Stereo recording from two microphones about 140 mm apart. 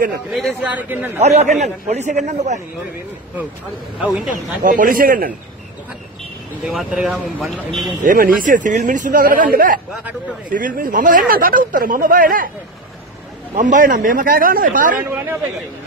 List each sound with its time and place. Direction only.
0.3 s speech: centre (ahead or behind)
0.7 s a man's voice: 10° right (ahead or behind)
1.6 s a man's voice: 55° right (ahead or behind)
4.0 s speech: 5° right (ahead or behind)
4.6 s speech: 80° right
6.6 s speech: 5° right (ahead or behind)
8.0 s speech: 80° right
13.6 s speech: 70° right (ahead or behind)
15.0 s a man's voice: 15° right (ahead or behind)